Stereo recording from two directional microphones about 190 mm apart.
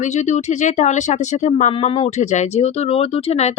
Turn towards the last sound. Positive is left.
turn(degrees=35)  # may be behind; listen again after turning